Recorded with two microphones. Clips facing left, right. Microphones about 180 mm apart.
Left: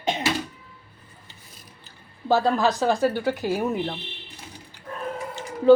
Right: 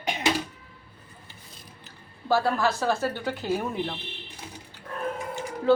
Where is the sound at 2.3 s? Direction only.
20° left (ahead or behind).